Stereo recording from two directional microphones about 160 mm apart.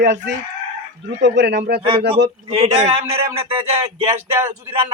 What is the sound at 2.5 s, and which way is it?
Speech, 35° right (ahead or behind).